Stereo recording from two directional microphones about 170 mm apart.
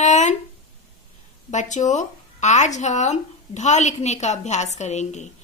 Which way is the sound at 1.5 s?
45° left (ahead or behind).